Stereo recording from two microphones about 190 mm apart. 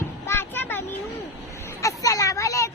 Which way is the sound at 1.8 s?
15° left (ahead or behind).